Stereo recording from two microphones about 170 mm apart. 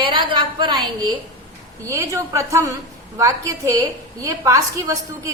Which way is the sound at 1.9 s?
20° right (ahead or behind).